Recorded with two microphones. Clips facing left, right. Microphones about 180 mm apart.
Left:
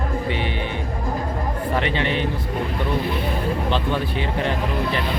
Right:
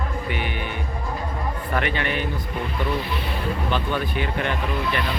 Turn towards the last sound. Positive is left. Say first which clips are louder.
# left 2 dB
turn(degrees=25)  # may be behind; listen again after turning